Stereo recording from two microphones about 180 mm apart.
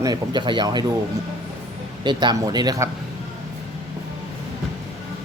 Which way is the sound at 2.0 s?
25° right (ahead or behind).